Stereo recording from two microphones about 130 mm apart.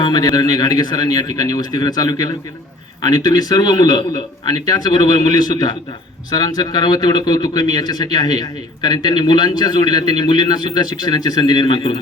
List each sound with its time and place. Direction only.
0.0 s speech: 30° left (ahead or behind)